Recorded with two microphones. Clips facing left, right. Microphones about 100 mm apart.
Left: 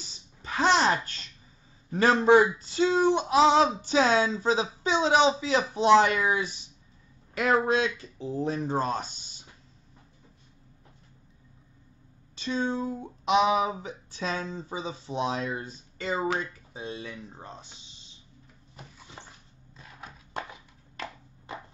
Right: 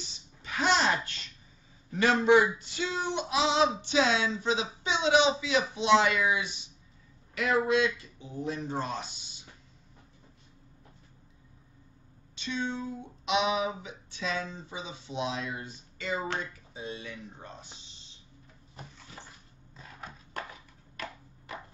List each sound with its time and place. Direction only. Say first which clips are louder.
0.4 s babbling: left 4 dB; 35° left (ahead or behind)
1.9 s speech: left 3 dB; 35° left (ahead or behind)
8.6 s speech: left 5 dB; 45° left (ahead or behind)
12.4 s speech: left 5 dB; 40° left (ahead or behind)
18.9 s a sound: left 1 dB; 20° left (ahead or behind)
20.9 s a sound: left 2 dB; 25° left (ahead or behind)